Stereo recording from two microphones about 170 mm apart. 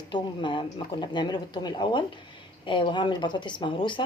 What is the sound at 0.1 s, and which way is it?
Speech, 25° left (ahead or behind).